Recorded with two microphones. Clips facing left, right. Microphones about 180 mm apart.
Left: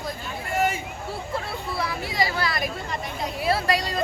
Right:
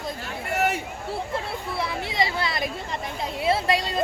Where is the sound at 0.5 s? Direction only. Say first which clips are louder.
Even; 70° right (ahead or behind).